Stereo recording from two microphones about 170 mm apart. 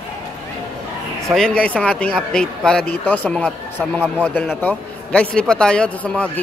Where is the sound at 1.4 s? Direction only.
5° left (ahead or behind).